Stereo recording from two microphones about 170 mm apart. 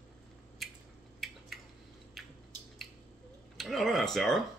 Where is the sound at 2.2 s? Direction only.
Centre (ahead or behind).